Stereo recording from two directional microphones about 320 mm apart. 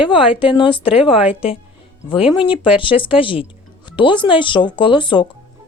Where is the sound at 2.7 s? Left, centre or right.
Centre.